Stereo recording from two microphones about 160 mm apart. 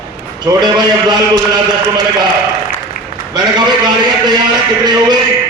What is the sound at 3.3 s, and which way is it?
A man's voice, 25° right (ahead or behind).